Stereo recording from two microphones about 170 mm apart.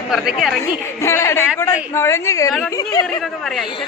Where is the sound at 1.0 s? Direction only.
15° left (ahead or behind).